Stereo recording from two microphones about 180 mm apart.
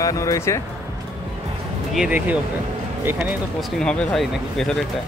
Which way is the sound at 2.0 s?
10° right (ahead or behind).